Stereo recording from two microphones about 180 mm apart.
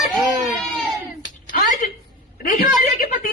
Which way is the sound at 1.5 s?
40° left (ahead or behind).